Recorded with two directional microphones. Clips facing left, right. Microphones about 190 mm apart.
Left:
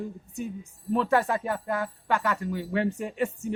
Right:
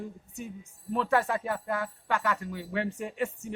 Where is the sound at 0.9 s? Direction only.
40° left (ahead or behind).